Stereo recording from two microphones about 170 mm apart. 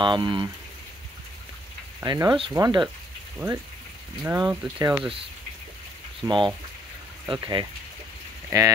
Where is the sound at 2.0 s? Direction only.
25° right (ahead or behind).